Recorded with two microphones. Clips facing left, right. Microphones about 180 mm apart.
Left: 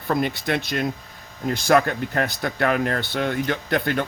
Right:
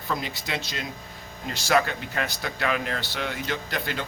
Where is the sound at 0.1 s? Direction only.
55° left (ahead or behind).